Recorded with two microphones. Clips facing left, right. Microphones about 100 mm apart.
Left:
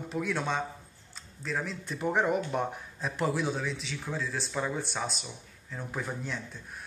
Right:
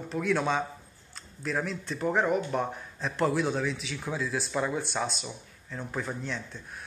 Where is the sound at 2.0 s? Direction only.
15° left (ahead or behind).